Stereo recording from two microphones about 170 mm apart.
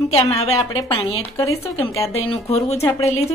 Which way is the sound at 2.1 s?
35° left (ahead or behind).